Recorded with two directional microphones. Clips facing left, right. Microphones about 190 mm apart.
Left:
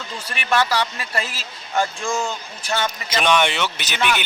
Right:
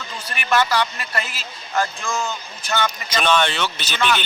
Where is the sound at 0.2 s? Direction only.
30° left (ahead or behind).